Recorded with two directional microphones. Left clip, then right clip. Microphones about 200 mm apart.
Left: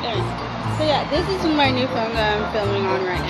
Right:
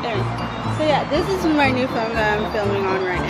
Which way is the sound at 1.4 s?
10° right (ahead or behind).